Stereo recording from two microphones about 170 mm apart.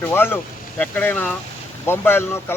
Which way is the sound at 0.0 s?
15° left (ahead or behind).